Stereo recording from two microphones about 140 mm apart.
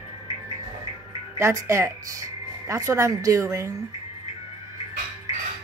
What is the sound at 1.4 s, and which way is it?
A woman's voice, 20° right (ahead or behind).